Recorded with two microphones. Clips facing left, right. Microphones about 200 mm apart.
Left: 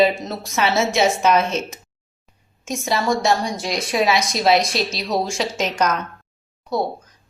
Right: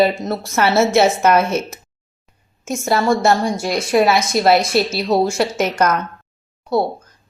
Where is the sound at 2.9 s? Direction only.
55° right (ahead or behind).